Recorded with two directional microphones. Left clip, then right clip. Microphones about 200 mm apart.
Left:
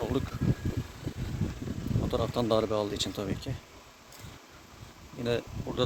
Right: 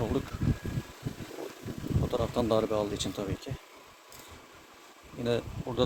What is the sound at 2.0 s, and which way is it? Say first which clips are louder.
Speech: even; centre (ahead or behind).